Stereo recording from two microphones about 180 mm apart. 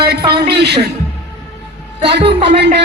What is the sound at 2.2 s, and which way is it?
Speech, 35° right (ahead or behind).